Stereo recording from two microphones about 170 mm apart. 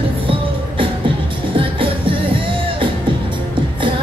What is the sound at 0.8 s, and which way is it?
Music, 30° right (ahead or behind).